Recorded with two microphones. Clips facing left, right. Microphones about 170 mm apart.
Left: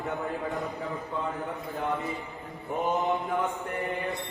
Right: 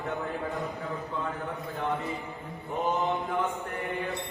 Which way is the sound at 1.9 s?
Centre (ahead or behind).